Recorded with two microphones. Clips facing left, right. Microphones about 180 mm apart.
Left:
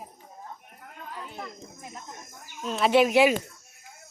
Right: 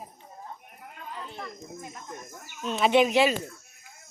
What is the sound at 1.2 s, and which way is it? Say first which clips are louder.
Speech: left 1 dB; 15° left (ahead or behind).